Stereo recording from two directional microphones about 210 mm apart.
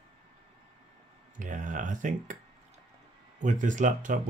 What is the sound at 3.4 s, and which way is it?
Speech, 35° right (ahead or behind).